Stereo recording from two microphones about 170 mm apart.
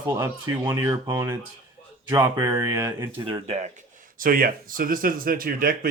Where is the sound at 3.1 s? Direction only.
30° right (ahead or behind).